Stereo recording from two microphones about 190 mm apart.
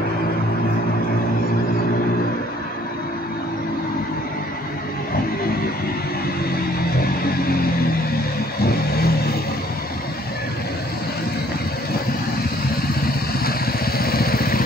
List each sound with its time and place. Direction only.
8.6 s vehicle: 55° left (ahead or behind)
13.5 s vehicle: 50° left (ahead or behind)